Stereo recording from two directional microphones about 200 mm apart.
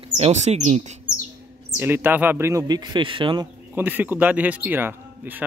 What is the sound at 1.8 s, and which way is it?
Speech, 10° right (ahead or behind).